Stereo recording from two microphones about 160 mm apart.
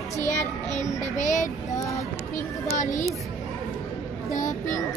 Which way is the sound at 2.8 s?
50° left (ahead or behind).